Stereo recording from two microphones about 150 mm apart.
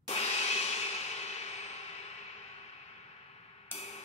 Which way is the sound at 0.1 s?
45° left (ahead or behind).